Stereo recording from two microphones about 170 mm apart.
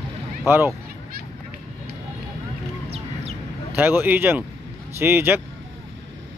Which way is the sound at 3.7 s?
10° right (ahead or behind).